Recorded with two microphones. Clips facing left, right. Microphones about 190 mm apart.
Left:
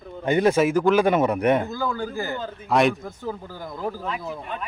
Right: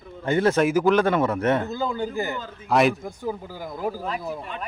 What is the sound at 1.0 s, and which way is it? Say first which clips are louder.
Speech: left 2 dB; 15° left (ahead or behind).